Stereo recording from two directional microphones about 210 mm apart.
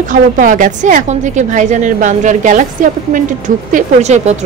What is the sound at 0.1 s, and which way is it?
A woman's voice, 40° right (ahead or behind).